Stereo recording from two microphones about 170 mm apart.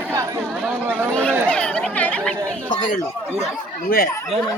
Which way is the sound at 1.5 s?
5° left (ahead or behind).